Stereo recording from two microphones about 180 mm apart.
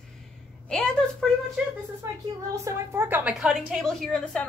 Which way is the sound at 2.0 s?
15° right (ahead or behind).